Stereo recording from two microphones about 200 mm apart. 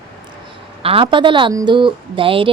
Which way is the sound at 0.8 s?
25° right (ahead or behind).